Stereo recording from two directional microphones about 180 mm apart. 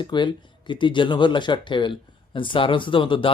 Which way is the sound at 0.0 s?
25° left (ahead or behind).